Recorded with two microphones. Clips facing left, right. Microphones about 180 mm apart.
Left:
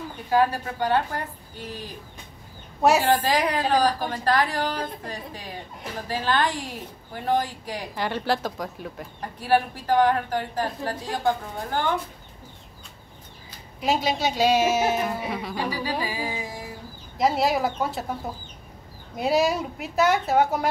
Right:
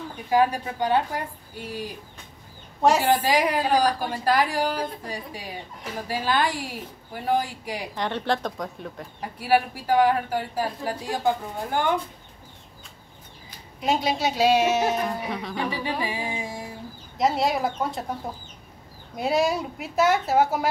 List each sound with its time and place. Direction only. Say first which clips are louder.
0.3 s a woman's voice: even; 15° right (ahead or behind)
3.0 s a woman's voice: even; 10° right (ahead or behind)
7.9 s a woman's voice: left 1 dB; 5° left (ahead or behind)
9.2 s a woman's voice: even; 10° right (ahead or behind)
13.7 s a woman's voice: even; centre (ahead or behind)
15.7 s music: even; 25° right (ahead or behind)
17.2 s a woman's voice: left 1 dB; centre (ahead or behind)